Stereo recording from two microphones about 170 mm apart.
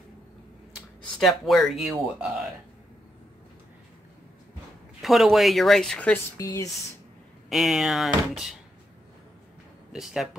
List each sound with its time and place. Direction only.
1.2 s speech: centre (ahead or behind)
5.0 s speech: centre (ahead or behind)
6.3 s speech: 20° left (ahead or behind)
7.4 s speech: centre (ahead or behind)
9.9 s speech: centre (ahead or behind)